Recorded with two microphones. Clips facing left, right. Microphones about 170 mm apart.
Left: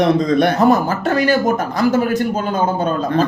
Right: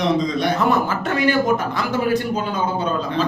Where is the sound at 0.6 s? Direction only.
40° left (ahead or behind).